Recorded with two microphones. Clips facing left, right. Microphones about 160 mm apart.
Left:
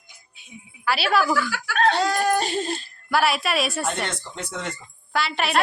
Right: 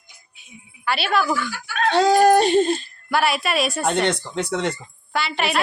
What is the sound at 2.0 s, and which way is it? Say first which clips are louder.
Speech: right 7 dB; 90° right.